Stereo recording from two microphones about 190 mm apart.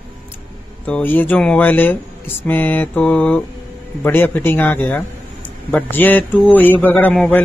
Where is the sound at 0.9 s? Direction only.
10° left (ahead or behind).